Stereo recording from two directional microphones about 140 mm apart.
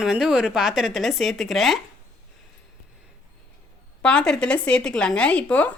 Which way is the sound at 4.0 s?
5° left (ahead or behind).